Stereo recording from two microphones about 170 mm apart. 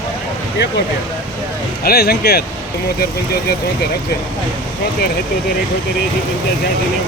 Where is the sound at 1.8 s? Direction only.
65° left (ahead or behind).